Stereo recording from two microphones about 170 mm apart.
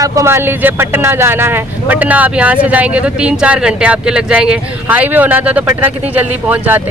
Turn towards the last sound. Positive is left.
turn(degrees=-10)  # may be behind; listen again after turning